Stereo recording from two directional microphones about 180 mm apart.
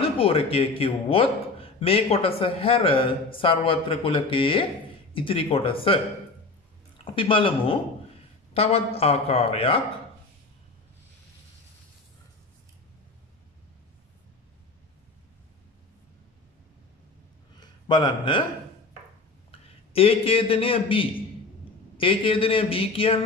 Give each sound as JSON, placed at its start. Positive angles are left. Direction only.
{"t": 0.0, "sound": "a man's voice", "side_deg": 30}
{"t": 7.2, "sound": "a man's voice", "side_deg": 30}
{"t": 17.6, "sound": "a sound", "side_deg": 25}
{"t": 19.5, "sound": "a man's voice", "side_deg": 30}